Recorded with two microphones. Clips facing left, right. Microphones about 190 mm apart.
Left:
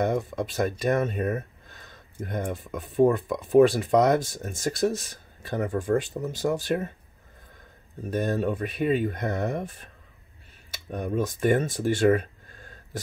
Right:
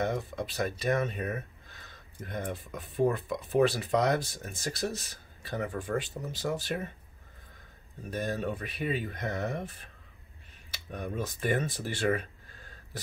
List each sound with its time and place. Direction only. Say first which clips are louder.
0.0 s speech: left 6 dB; 45° left (ahead or behind)
8.1 s speech: left 7 dB; 50° left (ahead or behind)